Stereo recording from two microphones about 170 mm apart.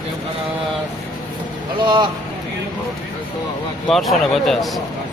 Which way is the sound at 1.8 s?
25° right (ahead or behind).